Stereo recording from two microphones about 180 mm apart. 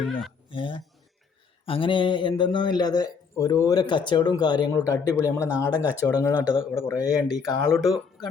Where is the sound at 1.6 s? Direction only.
30° left (ahead or behind).